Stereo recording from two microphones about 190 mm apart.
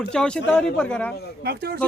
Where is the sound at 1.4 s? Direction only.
55° right (ahead or behind).